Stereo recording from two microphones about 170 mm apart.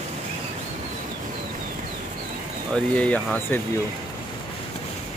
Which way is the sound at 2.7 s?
5° left (ahead or behind).